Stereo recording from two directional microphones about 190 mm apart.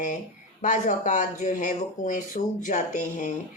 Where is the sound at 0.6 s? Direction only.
40° left (ahead or behind).